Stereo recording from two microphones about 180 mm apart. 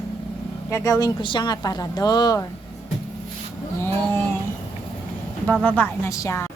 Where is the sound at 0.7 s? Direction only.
20° left (ahead or behind).